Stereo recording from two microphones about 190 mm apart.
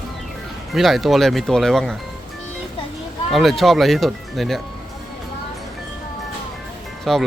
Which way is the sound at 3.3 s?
Centre (ahead or behind).